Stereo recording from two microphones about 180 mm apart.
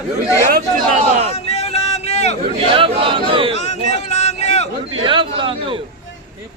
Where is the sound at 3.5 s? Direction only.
40° left (ahead or behind).